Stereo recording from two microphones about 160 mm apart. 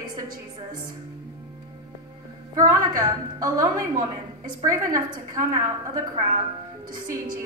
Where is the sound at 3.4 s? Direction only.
20° right (ahead or behind).